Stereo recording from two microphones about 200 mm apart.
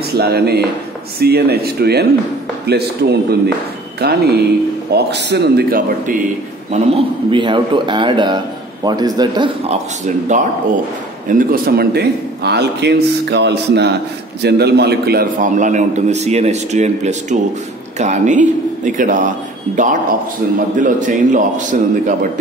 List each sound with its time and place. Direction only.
0.1 s speech: 50° right (ahead or behind)
6.7 s a man's voice: 25° right (ahead or behind)
10.0 s a man's voice: 35° right (ahead or behind)